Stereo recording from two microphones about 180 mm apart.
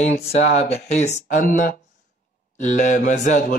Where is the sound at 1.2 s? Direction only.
45° left (ahead or behind).